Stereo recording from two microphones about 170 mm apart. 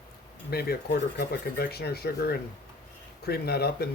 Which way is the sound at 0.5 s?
65° left (ahead or behind).